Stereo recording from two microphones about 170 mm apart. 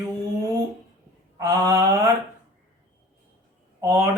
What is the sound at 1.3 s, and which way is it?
Speech, 20° right (ahead or behind).